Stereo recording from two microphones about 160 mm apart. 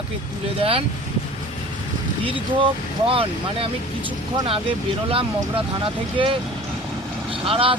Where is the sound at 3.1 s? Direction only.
35° right (ahead or behind).